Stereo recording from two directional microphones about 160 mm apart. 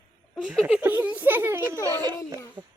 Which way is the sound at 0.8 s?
10° right (ahead or behind).